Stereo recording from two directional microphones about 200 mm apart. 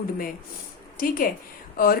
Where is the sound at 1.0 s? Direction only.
45° left (ahead or behind).